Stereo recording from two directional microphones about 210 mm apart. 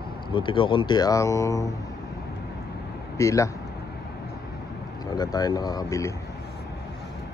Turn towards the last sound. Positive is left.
turn(degrees=15)  # may be behind; listen again after turning